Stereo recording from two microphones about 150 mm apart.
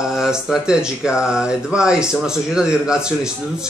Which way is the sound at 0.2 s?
5° right (ahead or behind).